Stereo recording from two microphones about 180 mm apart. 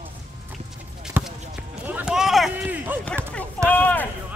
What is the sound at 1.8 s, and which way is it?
Run, 5° right (ahead or behind).